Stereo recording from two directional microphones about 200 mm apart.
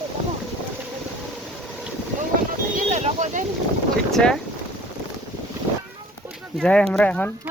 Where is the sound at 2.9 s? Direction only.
35° right (ahead or behind).